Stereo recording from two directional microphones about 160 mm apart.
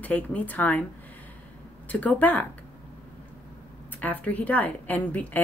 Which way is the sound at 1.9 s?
10° left (ahead or behind).